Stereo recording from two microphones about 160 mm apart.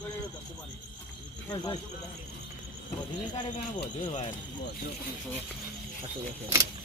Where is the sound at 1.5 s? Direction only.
25° left (ahead or behind).